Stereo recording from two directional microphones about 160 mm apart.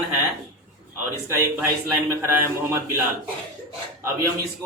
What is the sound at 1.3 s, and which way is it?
A man's voice, 15° right (ahead or behind).